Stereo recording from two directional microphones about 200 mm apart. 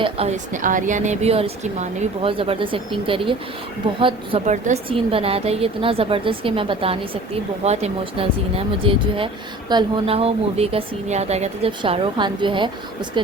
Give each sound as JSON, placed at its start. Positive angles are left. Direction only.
{"t": 0.0, "sound": "a woman's voice", "side_deg": -30}